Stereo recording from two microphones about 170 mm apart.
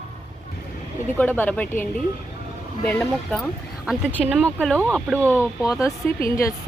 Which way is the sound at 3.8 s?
5° right (ahead or behind).